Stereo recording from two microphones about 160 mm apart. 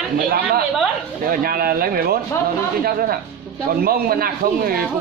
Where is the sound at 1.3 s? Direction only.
70° right (ahead or behind).